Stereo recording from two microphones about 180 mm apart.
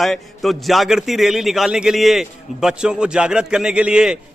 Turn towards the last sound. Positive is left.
turn(degrees=-5)  # may be behind; listen again after turning